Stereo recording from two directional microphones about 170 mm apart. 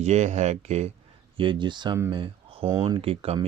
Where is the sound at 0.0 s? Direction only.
40° right (ahead or behind).